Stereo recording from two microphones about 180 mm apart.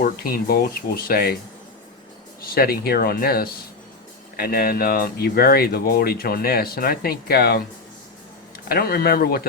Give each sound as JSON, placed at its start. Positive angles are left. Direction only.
{"t": 0.0, "sound": "speech", "side_deg": 55}
{"t": 2.4, "sound": "speech", "side_deg": 55}